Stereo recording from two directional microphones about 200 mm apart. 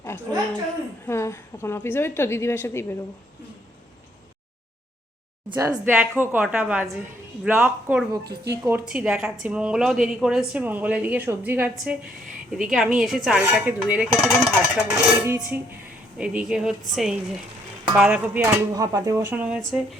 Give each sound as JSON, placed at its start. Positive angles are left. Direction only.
{"t": 1.0, "sound": "a woman's voice", "side_deg": 15}
{"t": 5.5, "sound": "a woman's voice", "side_deg": -15}
{"t": 8.2, "sound": "speech", "side_deg": -55}
{"t": 8.6, "sound": "a woman's voice", "side_deg": -10}
{"t": 14.9, "sound": "a woman's voice", "side_deg": -10}